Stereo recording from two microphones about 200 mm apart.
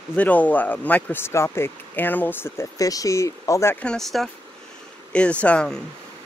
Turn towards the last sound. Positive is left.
turn(degrees=5)  # may be behind; listen again after turning